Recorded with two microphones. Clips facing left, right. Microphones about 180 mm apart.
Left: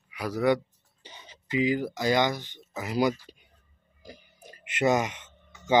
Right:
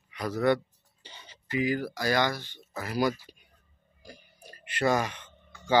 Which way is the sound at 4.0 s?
20° left (ahead or behind).